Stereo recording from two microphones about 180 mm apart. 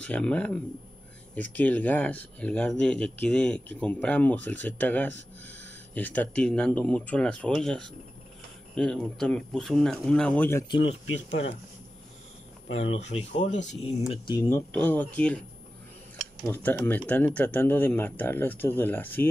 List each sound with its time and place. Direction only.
0.0 s speech: 5° left (ahead or behind)
10.7 s speech: 30° left (ahead or behind)
12.7 s speech: 35° left (ahead or behind)
14.7 s speech: 10° left (ahead or behind)
16.4 s speech: 10° left (ahead or behind)